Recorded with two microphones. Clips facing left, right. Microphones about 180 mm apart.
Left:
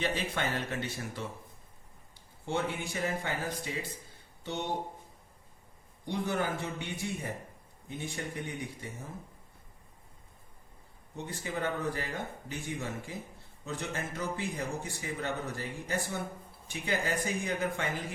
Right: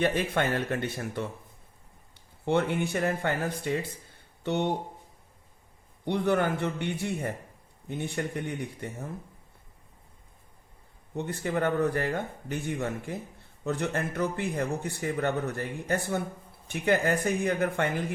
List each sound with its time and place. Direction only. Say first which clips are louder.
0.0 s speech: right 6 dB; 55° right (ahead or behind)
6.1 s speech: right 6 dB; 60° right (ahead or behind)
11.1 s speech: right 7 dB; 60° right (ahead or behind)